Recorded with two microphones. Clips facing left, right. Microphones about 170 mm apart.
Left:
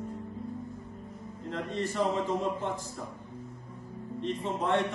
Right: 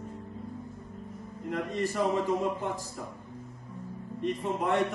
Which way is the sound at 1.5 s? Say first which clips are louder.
Right 2 dB; 10° right (ahead or behind).